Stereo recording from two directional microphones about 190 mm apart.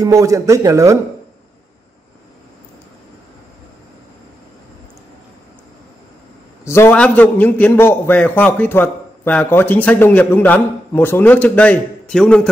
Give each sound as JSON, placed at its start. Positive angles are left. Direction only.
{"t": 0.0, "sound": "a man's voice", "side_deg": -15}
{"t": 6.6, "sound": "a man's voice", "side_deg": 15}